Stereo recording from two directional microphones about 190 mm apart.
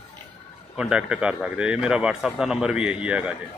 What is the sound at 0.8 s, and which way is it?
Speech, 5° right (ahead or behind).